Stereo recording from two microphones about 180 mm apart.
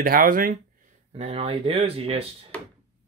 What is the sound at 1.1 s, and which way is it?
Speech, 35° right (ahead or behind).